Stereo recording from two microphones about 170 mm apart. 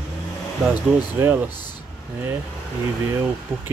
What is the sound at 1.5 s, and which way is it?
Speech, 25° left (ahead or behind).